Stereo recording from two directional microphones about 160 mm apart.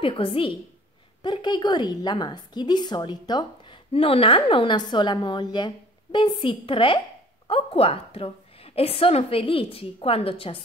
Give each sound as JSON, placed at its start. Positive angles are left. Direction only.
{"t": 0.0, "sound": "a woman's voice", "side_deg": 35}